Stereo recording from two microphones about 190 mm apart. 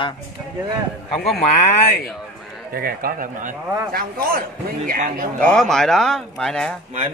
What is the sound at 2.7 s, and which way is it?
Speech, 50° right (ahead or behind).